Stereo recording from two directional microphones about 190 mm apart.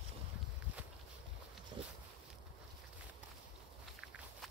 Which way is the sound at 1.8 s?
30° right (ahead or behind).